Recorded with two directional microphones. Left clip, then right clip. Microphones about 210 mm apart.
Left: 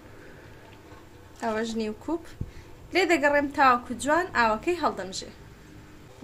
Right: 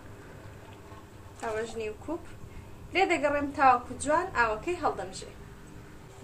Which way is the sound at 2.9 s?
55° left (ahead or behind).